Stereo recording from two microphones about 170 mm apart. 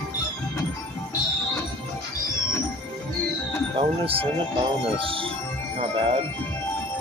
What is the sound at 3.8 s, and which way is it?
Speech, 35° right (ahead or behind).